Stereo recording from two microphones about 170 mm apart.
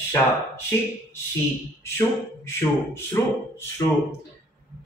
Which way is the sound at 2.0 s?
15° left (ahead or behind).